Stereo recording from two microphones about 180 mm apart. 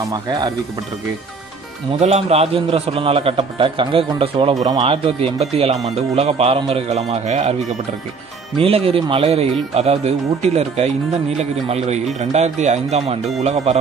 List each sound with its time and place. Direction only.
0.0 s speech: 20° right (ahead or behind)
2.0 s speech: 35° right (ahead or behind)
8.5 s speech: 30° right (ahead or behind)